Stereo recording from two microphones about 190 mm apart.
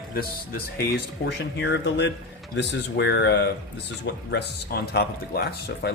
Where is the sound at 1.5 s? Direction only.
65° left (ahead or behind).